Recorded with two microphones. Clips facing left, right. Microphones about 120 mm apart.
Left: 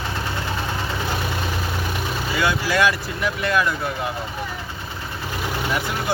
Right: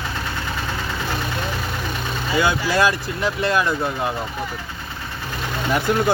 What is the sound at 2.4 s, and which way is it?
Speech, 30° right (ahead or behind).